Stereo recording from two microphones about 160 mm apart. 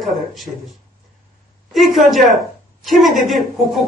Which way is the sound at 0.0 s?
Centre (ahead or behind).